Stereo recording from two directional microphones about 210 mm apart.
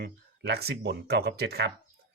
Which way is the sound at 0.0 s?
50° right (ahead or behind).